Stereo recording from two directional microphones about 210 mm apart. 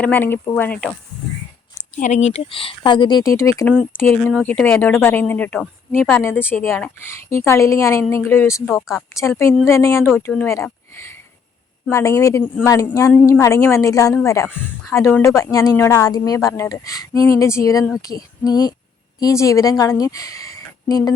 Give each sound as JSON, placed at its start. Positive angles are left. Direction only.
{"t": 0.0, "sound": "speech", "side_deg": 10}
{"t": 2.0, "sound": "speech", "side_deg": 35}